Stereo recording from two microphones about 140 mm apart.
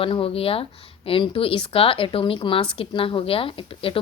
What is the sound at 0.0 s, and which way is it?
Speech, 40° left (ahead or behind).